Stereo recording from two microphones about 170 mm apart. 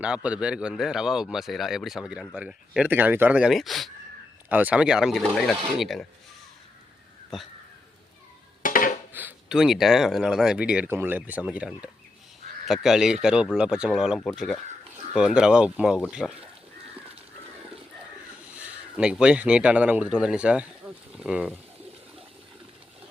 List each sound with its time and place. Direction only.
0.0 s speech: 5° right (ahead or behind)
7.3 s speech: centre (ahead or behind)
8.6 s a sound: 50° left (ahead or behind)
9.1 s speech: 5° right (ahead or behind)
18.5 s speech: 5° right (ahead or behind)